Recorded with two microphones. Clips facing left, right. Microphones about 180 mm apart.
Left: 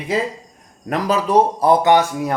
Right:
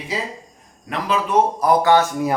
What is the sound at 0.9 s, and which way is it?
Speech, 40° left (ahead or behind).